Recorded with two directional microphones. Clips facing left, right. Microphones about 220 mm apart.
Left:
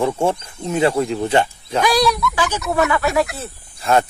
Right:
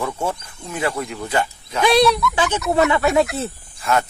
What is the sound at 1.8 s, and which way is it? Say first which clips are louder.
Speech: right 2 dB; 25° right (ahead or behind).